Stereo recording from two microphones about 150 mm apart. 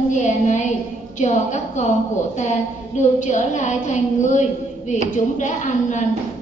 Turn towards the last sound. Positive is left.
turn(degrees=55)  # may be behind; listen again after turning